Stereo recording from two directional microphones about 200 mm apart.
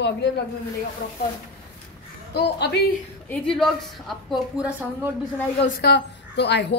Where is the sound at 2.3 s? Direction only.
55° left (ahead or behind).